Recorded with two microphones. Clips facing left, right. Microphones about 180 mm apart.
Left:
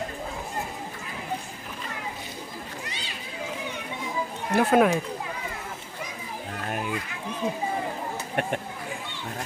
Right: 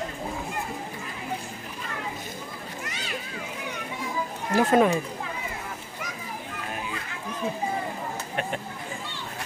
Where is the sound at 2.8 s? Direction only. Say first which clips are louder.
Right 2 dB; 30° left (ahead or behind).